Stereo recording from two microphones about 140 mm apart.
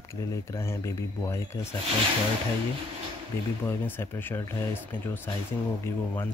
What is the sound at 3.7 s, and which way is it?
Speech, 15° left (ahead or behind).